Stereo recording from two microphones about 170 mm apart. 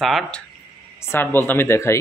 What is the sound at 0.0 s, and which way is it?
Speech, centre (ahead or behind).